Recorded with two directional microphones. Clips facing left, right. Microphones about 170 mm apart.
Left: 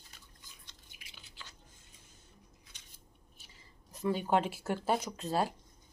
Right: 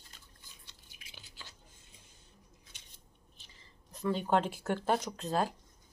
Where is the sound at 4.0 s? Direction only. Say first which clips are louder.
Even; 10° left (ahead or behind).